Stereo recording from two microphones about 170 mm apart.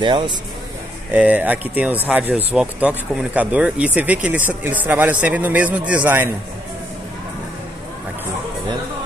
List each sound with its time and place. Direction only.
0.0 s speech: 25° right (ahead or behind)
1.1 s speech: 10° right (ahead or behind)